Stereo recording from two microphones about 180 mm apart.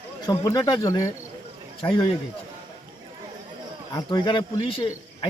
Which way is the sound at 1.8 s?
30° left (ahead or behind).